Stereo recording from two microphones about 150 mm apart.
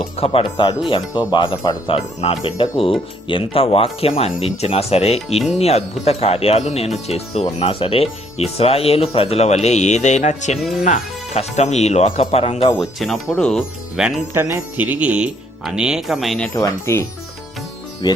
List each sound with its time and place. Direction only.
0.0 s speech: 40° left (ahead or behind)
12.7 s speech: centre (ahead or behind)
14.3 s speech: 15° right (ahead or behind)
16.6 s speech: 20° left (ahead or behind)